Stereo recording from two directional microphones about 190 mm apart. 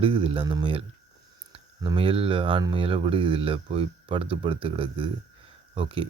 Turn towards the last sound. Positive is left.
turn(degrees=-25)  # may be behind; listen again after turning